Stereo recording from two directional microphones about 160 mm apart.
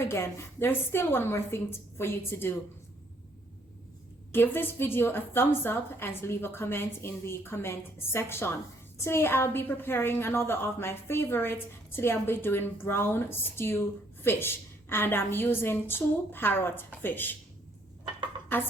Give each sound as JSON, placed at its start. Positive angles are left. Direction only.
{"t": 0.0, "sound": "a woman's voice", "side_deg": 15}
{"t": 4.3, "sound": "a woman's voice", "side_deg": 15}
{"t": 18.5, "sound": "a woman's voice", "side_deg": 10}